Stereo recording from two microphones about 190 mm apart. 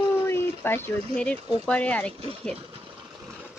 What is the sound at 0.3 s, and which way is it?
Speech, 10° left (ahead or behind).